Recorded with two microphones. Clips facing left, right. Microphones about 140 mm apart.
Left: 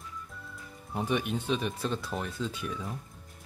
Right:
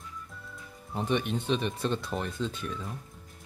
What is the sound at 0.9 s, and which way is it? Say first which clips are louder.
Speech: right 1 dB; 5° left (ahead or behind).